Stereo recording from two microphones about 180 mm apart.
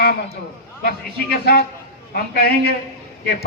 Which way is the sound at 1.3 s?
60° left (ahead or behind).